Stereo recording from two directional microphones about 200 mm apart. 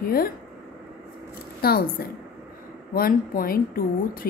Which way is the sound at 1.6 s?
50° left (ahead or behind).